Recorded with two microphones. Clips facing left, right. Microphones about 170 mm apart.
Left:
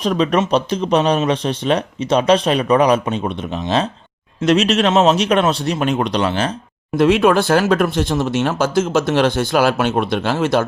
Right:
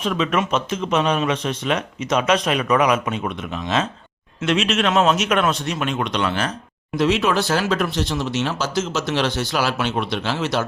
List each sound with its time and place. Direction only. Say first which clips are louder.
0.0 s speech: left 5 dB; 35° left (ahead or behind)
6.9 s speech: left 6 dB; 55° left (ahead or behind)